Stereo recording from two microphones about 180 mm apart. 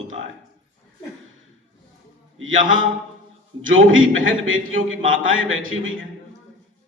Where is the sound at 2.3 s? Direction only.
90° right.